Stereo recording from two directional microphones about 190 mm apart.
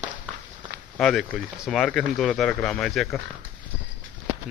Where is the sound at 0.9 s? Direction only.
Centre (ahead or behind).